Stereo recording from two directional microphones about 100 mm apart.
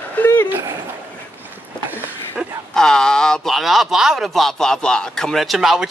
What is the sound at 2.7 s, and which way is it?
Speech, 5° left (ahead or behind).